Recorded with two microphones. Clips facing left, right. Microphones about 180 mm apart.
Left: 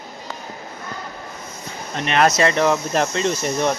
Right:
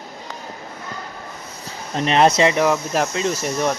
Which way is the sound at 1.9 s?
30° right (ahead or behind).